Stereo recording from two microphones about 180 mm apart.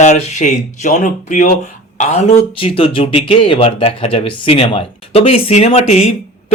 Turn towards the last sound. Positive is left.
turn(degrees=35)  # may be behind; listen again after turning